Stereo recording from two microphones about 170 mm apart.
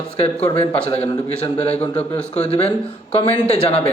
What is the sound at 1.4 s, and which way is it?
Speech, 40° left (ahead or behind).